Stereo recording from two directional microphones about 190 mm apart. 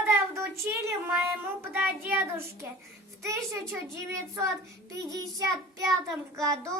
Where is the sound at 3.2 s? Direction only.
15° right (ahead or behind).